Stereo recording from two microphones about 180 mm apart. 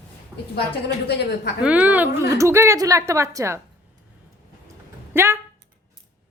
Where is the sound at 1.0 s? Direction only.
65° left (ahead or behind).